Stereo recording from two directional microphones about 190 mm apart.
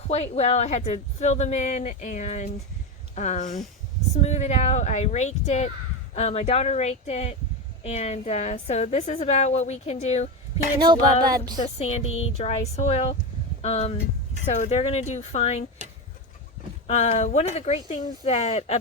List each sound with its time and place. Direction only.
0.1 s a woman's voice: 35° left (ahead or behind)
10.8 s music: 20° right (ahead or behind)
11.6 s a woman's voice: 35° left (ahead or behind)
16.8 s a woman's voice: 35° left (ahead or behind)